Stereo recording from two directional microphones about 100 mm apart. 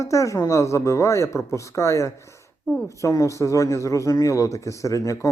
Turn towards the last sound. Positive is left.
turn(degrees=35)  # may be behind; listen again after turning